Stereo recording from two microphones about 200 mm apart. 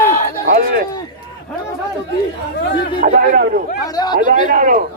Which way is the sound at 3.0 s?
45° right (ahead or behind).